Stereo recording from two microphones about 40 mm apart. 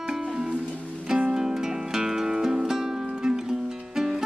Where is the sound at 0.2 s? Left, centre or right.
Centre.